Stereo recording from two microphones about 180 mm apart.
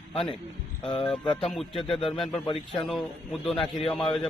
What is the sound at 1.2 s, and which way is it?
Speech, 30° left (ahead or behind).